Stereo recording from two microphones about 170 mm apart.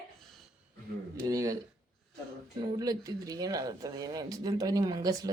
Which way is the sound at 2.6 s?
20° right (ahead or behind).